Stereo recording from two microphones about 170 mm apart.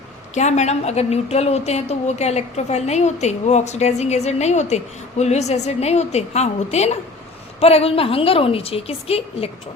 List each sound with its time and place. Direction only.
0.3 s a woman's voice: 40° left (ahead or behind)